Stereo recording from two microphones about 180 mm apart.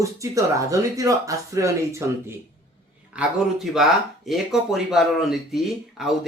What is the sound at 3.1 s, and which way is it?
Speech, 5° right (ahead or behind).